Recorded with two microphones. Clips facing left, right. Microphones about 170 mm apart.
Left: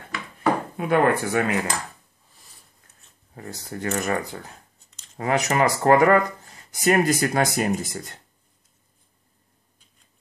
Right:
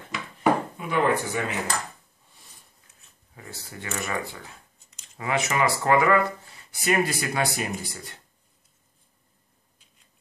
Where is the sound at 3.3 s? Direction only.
45° left (ahead or behind).